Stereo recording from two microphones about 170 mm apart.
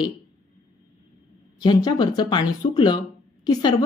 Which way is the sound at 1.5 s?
25° left (ahead or behind).